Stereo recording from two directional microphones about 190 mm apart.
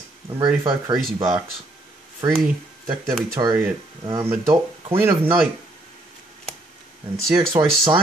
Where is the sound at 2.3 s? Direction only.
5° right (ahead or behind).